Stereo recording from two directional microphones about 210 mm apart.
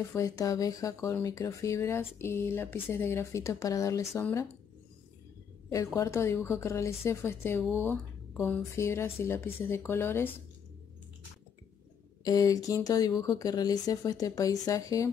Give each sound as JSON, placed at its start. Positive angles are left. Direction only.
{"t": 0.1, "sound": "speech", "side_deg": 15}
{"t": 5.7, "sound": "speech", "side_deg": 15}
{"t": 7.8, "sound": "a sound", "side_deg": 10}
{"t": 8.7, "sound": "speech", "side_deg": 10}
{"t": 12.3, "sound": "speech", "side_deg": 15}